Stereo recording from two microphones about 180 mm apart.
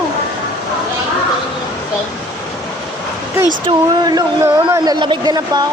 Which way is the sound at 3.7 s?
20° right (ahead or behind).